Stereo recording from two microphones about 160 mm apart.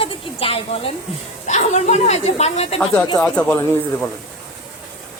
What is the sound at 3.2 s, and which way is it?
Speech, 5° left (ahead or behind).